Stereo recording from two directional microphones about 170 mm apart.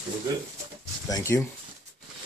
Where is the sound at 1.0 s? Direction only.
20° left (ahead or behind).